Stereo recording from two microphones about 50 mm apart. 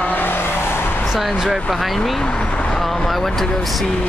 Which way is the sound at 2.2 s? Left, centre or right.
Left.